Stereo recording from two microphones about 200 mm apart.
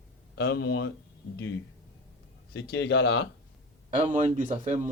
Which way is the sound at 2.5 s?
60° left (ahead or behind).